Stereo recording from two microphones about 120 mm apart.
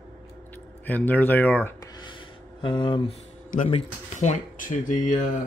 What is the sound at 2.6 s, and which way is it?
Speech, 40° left (ahead or behind).